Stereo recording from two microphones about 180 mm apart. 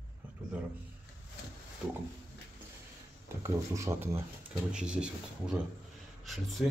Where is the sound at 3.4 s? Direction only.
15° right (ahead or behind).